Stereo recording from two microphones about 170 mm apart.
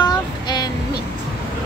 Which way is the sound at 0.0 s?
25° left (ahead or behind).